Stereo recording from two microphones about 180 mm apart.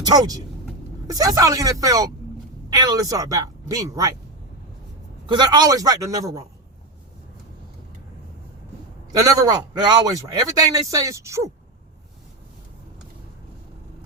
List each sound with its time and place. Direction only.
0.0 s speech: 20° right (ahead or behind)
5.3 s speech: 25° right (ahead or behind)
9.1 s speech: 20° right (ahead or behind)